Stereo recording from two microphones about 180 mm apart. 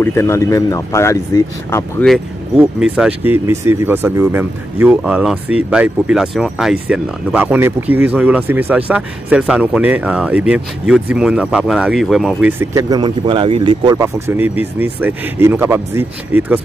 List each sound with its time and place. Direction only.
0.0 s speech: 15° left (ahead or behind)
2.5 s speech: 5° right (ahead or behind); by 14.0 s 25° right (ahead or behind)
14.0 s speech: 15° right (ahead or behind)